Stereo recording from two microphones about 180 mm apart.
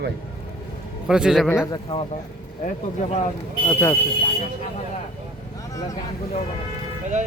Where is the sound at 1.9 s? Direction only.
35° left (ahead or behind).